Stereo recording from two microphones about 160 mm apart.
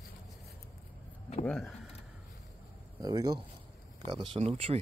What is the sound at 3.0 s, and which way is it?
Speech, 25° right (ahead or behind).